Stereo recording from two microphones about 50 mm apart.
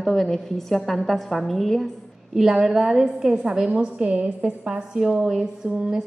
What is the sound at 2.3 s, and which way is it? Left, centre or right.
A woman's voice, centre.